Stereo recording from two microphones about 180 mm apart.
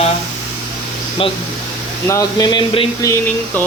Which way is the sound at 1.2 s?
30° left (ahead or behind).